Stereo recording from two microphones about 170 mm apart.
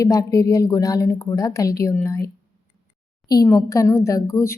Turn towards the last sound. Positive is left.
turn(degrees=15)  # may be behind; listen again after turning